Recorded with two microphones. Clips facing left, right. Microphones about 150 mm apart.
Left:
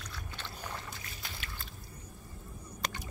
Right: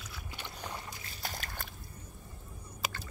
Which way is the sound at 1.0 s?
40° right (ahead or behind).